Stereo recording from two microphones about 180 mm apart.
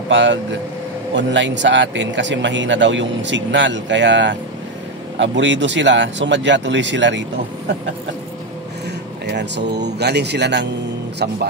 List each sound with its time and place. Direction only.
0.1 s speech: 85° right
9.2 s speech: 70° right (ahead or behind)